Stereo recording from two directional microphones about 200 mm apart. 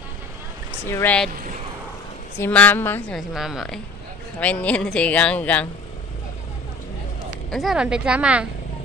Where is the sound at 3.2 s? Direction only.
Centre (ahead or behind).